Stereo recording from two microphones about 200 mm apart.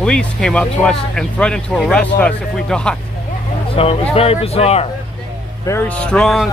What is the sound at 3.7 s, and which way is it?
Speech, 30° left (ahead or behind).